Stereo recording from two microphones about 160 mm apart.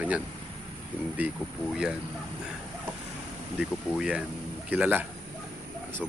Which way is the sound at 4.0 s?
5° right (ahead or behind).